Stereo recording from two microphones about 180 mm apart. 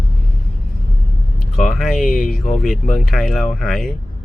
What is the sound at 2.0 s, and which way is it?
Speech, 50° left (ahead or behind).